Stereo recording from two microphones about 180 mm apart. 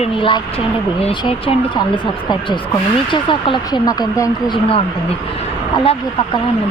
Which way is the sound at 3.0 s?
25° left (ahead or behind).